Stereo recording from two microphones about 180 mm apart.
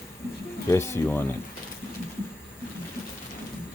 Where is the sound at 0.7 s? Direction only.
15° left (ahead or behind).